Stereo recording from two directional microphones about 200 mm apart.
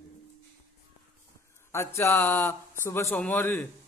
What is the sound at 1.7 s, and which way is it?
A man's voice, 15° left (ahead or behind).